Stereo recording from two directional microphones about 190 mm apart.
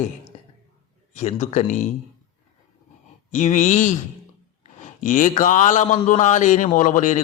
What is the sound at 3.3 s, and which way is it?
A man's voice, 40° left (ahead or behind).